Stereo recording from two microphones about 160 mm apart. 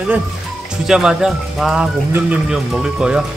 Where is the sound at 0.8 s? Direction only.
5° right (ahead or behind).